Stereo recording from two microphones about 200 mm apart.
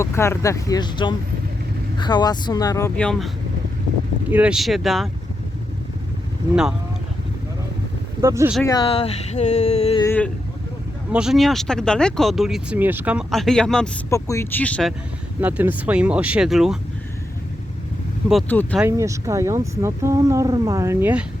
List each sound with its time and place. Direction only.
0.0 s speech: 15° left (ahead or behind)
2.9 s speech: 5° left (ahead or behind)
8.2 s speech: 15° right (ahead or behind)
8.6 s speech: 20° left (ahead or behind)
10.0 s speech: 10° left (ahead or behind)
11.1 s speech: 5° right (ahead or behind)
14.1 s speech: 15° left (ahead or behind)
15.4 s speech: 10° right (ahead or behind)
18.3 s speech: 5° left (ahead or behind)
18.8 s speech: 15° right (ahead or behind)